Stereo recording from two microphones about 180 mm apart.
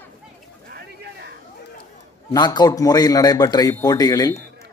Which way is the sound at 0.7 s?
60° right (ahead or behind).